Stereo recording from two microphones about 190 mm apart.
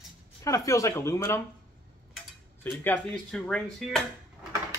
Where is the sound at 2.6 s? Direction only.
10° left (ahead or behind).